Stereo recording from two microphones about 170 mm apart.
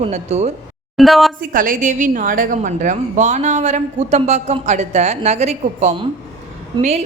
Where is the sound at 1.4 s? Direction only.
50° right (ahead or behind).